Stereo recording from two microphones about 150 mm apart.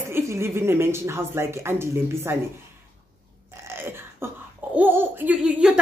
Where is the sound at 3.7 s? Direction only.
15° right (ahead or behind).